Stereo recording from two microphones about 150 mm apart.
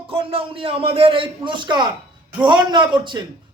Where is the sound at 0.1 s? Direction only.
40° right (ahead or behind).